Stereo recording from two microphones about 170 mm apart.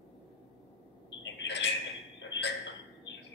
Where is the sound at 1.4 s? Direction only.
90° left.